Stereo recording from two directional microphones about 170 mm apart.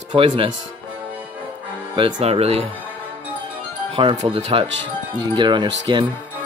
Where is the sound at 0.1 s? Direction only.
35° right (ahead or behind).